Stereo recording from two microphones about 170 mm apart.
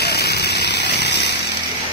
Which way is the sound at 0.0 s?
70° left (ahead or behind).